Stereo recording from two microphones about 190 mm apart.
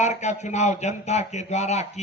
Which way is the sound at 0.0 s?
40° left (ahead or behind).